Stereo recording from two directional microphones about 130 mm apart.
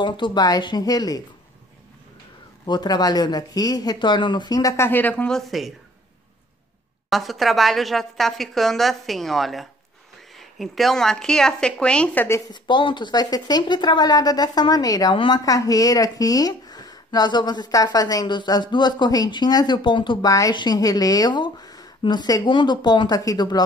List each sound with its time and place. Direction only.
0.0 s speech: 35° left (ahead or behind)
2.6 s speech: 35° left (ahead or behind); by 5.7 s centre (ahead or behind)
7.1 s a woman's voice: centre (ahead or behind); by 12.4 s 15° left (ahead or behind)
12.5 s speech: 35° left (ahead or behind)